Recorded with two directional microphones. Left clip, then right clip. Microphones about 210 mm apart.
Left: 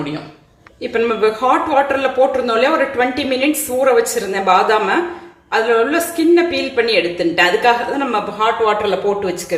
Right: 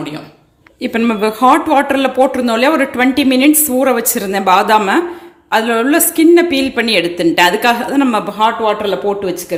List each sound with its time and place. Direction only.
0.8 s speech: 45° right (ahead or behind)